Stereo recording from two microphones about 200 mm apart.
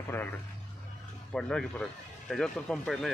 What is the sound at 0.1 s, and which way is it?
Speech, 10° left (ahead or behind).